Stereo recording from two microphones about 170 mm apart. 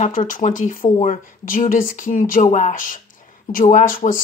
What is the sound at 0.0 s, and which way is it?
Speech, 50° left (ahead or behind).